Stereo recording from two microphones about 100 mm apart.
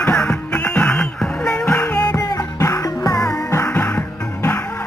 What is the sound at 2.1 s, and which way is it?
Music, 30° left (ahead or behind).